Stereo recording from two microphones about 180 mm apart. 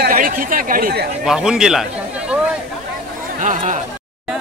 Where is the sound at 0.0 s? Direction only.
50° right (ahead or behind).